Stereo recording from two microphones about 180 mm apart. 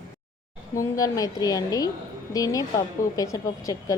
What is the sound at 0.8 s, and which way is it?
A woman's voice, 20° left (ahead or behind).